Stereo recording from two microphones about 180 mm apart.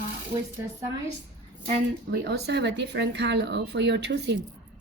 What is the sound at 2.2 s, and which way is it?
A woman's voice, 65° right (ahead or behind).